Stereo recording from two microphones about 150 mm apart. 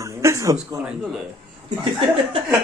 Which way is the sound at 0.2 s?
20° right (ahead or behind).